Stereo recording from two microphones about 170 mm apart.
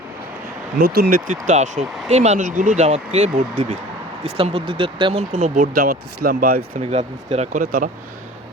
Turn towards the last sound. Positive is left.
turn(degrees=-55)  # may be behind; listen again after turning